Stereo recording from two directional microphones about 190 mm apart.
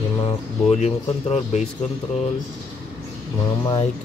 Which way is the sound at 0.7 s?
35° left (ahead or behind).